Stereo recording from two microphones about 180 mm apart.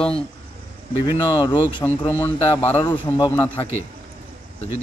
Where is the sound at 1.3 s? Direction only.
25° left (ahead or behind).